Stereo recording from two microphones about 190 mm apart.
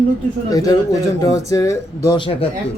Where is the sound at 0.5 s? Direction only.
20° left (ahead or behind).